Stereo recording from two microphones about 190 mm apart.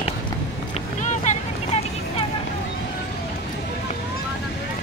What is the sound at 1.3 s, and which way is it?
Vehicle, 40° left (ahead or behind).